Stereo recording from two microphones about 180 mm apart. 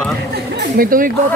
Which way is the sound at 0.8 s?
50° right (ahead or behind).